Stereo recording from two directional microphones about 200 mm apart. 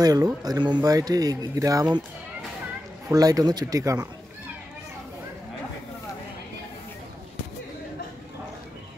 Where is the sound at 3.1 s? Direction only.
20° right (ahead or behind).